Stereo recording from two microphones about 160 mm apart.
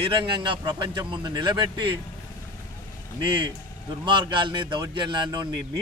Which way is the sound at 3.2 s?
30° right (ahead or behind).